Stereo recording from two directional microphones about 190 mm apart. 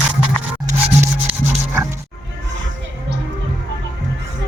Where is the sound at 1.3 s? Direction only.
5° right (ahead or behind).